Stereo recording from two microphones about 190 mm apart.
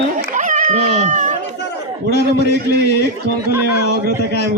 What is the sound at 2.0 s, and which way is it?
Speech, 60° right (ahead or behind).